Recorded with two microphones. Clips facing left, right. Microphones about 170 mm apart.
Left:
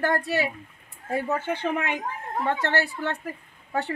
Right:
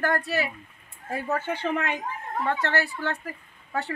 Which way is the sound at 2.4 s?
25° left (ahead or behind).